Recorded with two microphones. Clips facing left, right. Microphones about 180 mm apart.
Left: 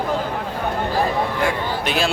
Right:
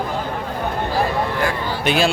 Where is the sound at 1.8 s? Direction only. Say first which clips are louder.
Right 5 dB; centre (ahead or behind).